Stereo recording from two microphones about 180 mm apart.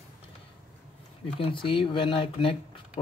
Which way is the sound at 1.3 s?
30° left (ahead or behind).